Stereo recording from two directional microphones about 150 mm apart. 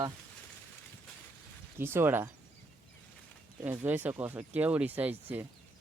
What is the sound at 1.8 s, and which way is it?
Speech, 15° right (ahead or behind).